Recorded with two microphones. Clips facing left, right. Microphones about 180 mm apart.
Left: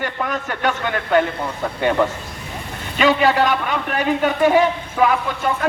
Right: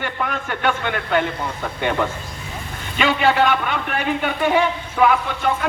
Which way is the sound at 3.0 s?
40° left (ahead or behind).